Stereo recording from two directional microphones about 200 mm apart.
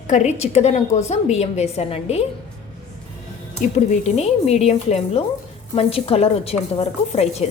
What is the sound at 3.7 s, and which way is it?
A woman's voice, 35° left (ahead or behind).